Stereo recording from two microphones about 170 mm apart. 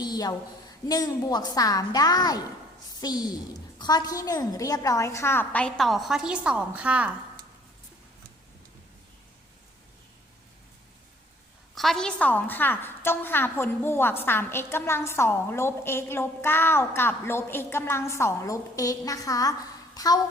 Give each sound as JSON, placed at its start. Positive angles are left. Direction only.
{"t": 0.0, "sound": "a sound", "side_deg": 25}
{"t": 0.9, "sound": "a woman's voice", "side_deg": 25}
{"t": 11.7, "sound": "a woman's voice", "side_deg": 0}